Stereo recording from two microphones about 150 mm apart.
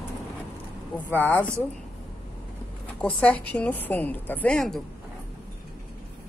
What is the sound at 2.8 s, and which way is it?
A woman's voice, 10° left (ahead or behind).